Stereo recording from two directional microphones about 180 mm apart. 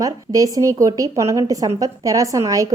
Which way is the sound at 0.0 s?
20° right (ahead or behind).